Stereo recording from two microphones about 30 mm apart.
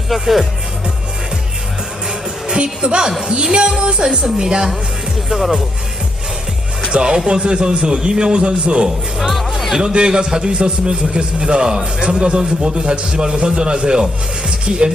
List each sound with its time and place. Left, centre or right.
0.1 s speech: centre
2.5 s a man's voice: right; by 5.6 s centre
6.9 s a man's voice: right
9.1 s speech: centre
9.9 s a man's voice: right